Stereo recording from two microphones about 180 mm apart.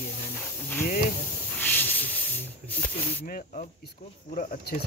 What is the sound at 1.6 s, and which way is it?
Hiss, 10° left (ahead or behind).